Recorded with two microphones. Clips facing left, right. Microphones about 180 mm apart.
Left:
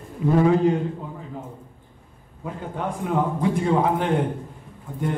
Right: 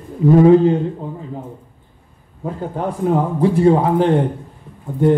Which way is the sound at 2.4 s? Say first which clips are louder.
Right 6 dB; 35° right (ahead or behind).